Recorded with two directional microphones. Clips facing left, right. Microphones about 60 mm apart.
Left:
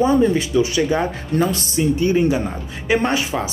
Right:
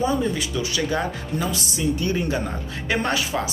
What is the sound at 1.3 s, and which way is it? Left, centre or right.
Speech, left.